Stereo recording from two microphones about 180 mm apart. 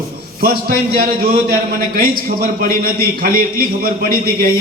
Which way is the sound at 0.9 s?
55° right (ahead or behind).